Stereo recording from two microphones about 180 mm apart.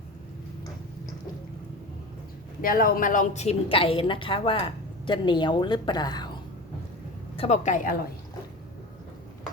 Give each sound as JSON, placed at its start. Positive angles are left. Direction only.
{"t": 2.6, "sound": "a woman's voice", "side_deg": 50}
{"t": 7.3, "sound": "speech", "side_deg": 35}